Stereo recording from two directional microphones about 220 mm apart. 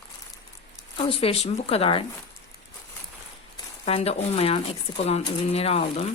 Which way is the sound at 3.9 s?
25° left (ahead or behind).